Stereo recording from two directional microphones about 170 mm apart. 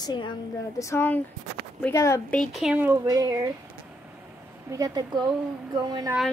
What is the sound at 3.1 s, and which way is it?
Speech, 20° right (ahead or behind).